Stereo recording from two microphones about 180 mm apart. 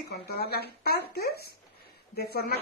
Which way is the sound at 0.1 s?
60° left (ahead or behind).